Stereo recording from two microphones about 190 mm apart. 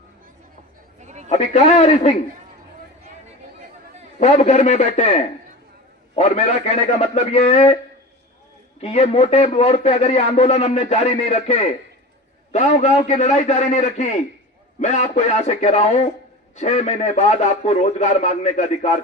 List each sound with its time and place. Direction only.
1.0 s a sound: 40° right (ahead or behind)
1.3 s a man's voice: 35° left (ahead or behind)
4.2 s a man's voice: 35° left (ahead or behind)
8.8 s a man's voice: 35° left (ahead or behind)